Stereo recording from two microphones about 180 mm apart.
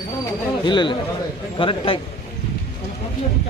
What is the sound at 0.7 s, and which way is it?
A man's voice, 25° left (ahead or behind).